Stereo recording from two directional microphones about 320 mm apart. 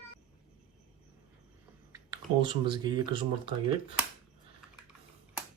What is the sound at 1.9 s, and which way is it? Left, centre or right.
Speech, centre.